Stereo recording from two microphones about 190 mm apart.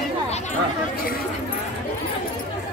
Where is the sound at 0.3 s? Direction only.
45° left (ahead or behind).